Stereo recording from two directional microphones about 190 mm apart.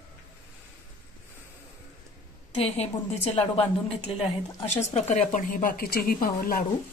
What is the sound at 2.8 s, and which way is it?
A woman's voice, 30° left (ahead or behind).